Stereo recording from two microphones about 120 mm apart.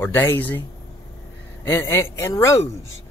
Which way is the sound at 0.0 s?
20° left (ahead or behind).